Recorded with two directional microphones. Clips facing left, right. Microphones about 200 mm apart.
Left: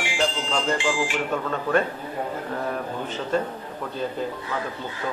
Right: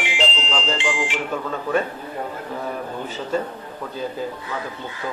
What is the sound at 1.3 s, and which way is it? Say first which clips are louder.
Speech: right 1 dB; 5° right (ahead or behind).